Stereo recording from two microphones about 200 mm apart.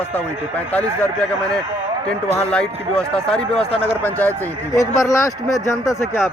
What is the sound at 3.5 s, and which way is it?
Speech, 30° left (ahead or behind).